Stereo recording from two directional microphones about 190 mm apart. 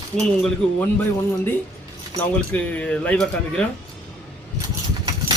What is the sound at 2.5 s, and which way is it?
Speech, 5° left (ahead or behind).